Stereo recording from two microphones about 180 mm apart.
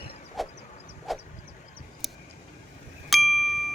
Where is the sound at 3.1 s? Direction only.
Centre (ahead or behind).